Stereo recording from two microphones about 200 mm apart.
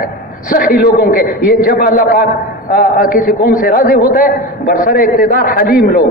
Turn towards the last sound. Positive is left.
turn(degrees=45)  # may be behind; listen again after turning